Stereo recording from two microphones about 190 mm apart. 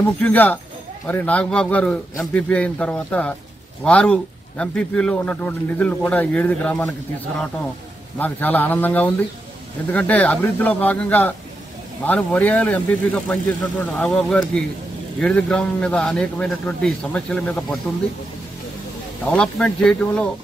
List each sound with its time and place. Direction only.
0.2 s speech: 10° left (ahead or behind)
8.2 s a man's voice: 10° left (ahead or behind)
19.3 s a man's voice: 5° left (ahead or behind)